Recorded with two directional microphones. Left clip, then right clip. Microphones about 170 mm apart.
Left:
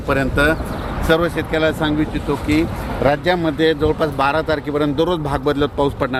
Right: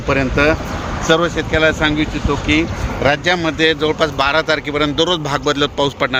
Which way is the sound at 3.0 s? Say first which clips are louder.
Right 1 dB; 20° left (ahead or behind).